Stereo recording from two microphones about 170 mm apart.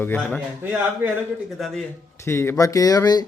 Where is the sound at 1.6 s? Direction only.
Centre (ahead or behind).